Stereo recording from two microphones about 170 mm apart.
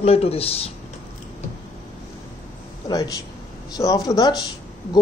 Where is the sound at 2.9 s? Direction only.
20° left (ahead or behind).